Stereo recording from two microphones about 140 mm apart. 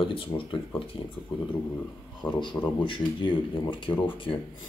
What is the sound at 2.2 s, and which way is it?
Speech, 5° left (ahead or behind).